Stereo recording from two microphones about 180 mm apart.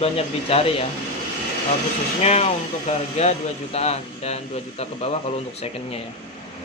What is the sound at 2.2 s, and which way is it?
A man's voice, 35° left (ahead or behind).